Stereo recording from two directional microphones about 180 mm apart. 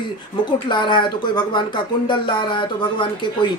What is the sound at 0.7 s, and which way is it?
Speech, 25° left (ahead or behind).